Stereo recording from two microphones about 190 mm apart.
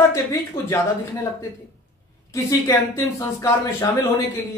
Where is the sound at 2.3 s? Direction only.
15° left (ahead or behind).